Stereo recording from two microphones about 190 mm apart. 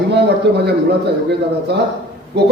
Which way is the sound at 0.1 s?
60° right (ahead or behind).